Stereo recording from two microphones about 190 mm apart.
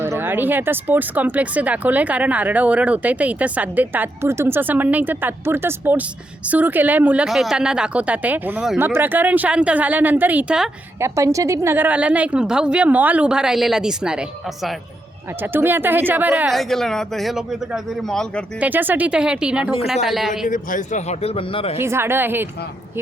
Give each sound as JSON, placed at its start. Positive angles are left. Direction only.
{"t": 0.0, "sound": "speech", "side_deg": -10}
{"t": 18.6, "sound": "speech", "side_deg": -10}
{"t": 20.5, "sound": "a man's voice", "side_deg": 45}
{"t": 21.8, "sound": "speech", "side_deg": -15}